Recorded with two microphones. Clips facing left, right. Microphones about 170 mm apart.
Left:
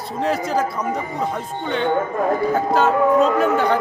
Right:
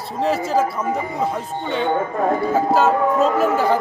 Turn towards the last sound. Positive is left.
turn(degrees=-5)  # may be behind; listen again after turning